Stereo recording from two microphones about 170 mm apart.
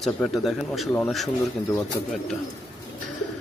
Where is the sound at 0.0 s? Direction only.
Centre (ahead or behind).